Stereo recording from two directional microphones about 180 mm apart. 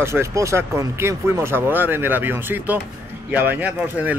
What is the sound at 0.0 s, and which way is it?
A man's voice, 15° right (ahead or behind).